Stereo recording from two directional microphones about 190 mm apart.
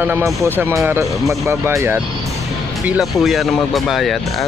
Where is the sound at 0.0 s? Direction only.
10° right (ahead or behind).